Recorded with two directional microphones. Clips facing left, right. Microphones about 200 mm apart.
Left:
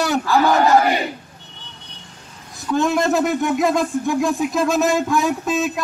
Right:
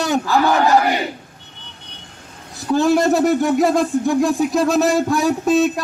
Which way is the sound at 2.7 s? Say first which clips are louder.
Right 3 dB; 35° right (ahead or behind).